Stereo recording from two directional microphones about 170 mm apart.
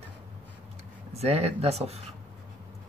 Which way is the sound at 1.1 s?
35° right (ahead or behind).